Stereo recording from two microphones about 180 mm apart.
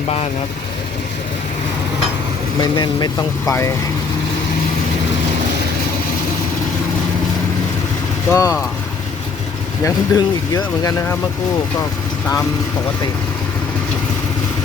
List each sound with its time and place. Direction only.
2.6 s speech: 25° left (ahead or behind)
8.3 s speech: 20° left (ahead or behind)
9.8 s speech: 20° left (ahead or behind)